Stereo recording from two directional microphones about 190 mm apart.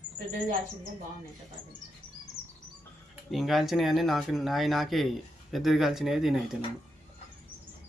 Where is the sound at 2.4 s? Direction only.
30° left (ahead or behind).